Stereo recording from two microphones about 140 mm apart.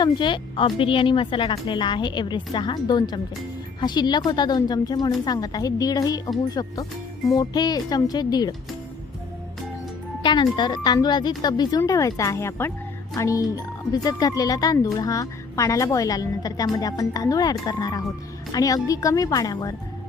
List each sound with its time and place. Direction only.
0.0 s a woman's voice: 35° left (ahead or behind)
10.2 s a woman's voice: 35° left (ahead or behind)